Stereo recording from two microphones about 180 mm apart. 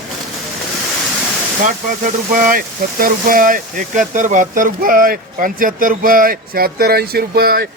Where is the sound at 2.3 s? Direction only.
45° right (ahead or behind).